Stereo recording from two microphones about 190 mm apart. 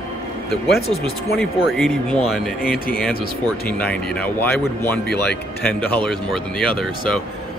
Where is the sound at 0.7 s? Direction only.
55° left (ahead or behind).